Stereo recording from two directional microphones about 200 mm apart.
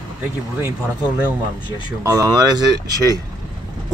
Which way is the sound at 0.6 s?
5° right (ahead or behind).